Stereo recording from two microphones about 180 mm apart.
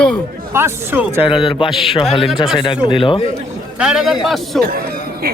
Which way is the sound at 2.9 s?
30° left (ahead or behind).